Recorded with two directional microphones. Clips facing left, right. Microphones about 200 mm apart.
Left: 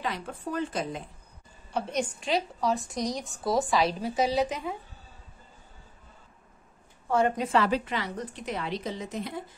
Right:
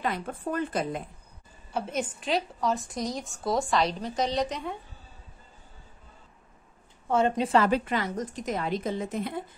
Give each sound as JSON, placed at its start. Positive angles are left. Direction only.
{"t": 0.0, "sound": "a woman's voice", "side_deg": -50}
{"t": 1.7, "sound": "speech", "side_deg": -5}
{"t": 7.1, "sound": "a woman's voice", "side_deg": -25}
{"t": 7.5, "sound": "a woman's voice", "side_deg": -50}